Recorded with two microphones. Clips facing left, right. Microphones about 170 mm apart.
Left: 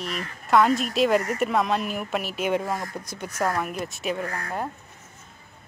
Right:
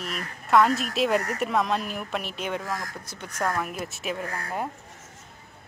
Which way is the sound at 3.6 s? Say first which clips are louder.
Left 2 dB; centre (ahead or behind).